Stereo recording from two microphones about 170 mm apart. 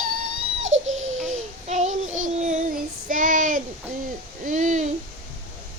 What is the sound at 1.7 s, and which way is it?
Child singing, 45° right (ahead or behind).